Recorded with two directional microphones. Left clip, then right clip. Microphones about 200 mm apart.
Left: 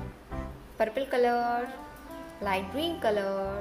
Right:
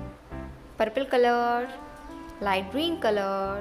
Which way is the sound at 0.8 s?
20° right (ahead or behind).